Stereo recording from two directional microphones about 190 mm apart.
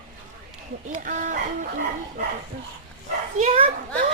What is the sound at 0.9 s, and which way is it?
Speech, 45° right (ahead or behind).